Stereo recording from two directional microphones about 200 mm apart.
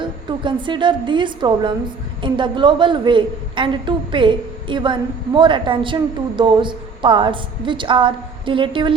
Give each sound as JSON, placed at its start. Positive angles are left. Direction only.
{"t": 0.3, "sound": "a woman's voice", "side_deg": -25}